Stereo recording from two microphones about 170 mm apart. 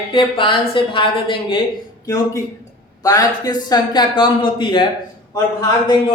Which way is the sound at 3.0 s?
20° left (ahead or behind).